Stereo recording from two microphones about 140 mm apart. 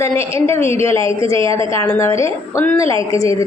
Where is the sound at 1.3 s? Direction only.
40° right (ahead or behind).